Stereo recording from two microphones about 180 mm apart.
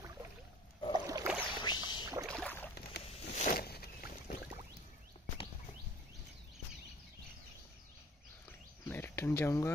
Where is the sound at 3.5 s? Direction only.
60° left (ahead or behind).